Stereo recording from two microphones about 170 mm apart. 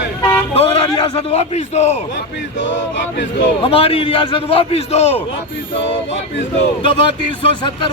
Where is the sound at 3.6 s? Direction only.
35° left (ahead or behind).